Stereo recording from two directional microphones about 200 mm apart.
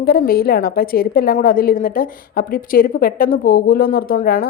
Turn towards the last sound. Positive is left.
turn(degrees=45)  # may be behind; listen again after turning